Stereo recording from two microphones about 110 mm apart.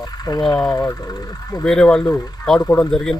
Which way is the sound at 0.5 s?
20° left (ahead or behind).